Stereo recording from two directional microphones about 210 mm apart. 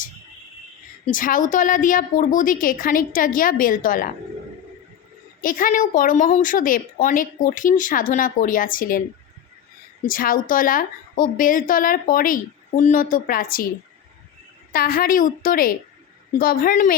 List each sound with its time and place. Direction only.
1.0 s speech: 40° left (ahead or behind)
5.4 s speech: 40° left (ahead or behind)
10.1 s speech: 40° left (ahead or behind)
14.7 s a woman's voice: 45° left (ahead or behind)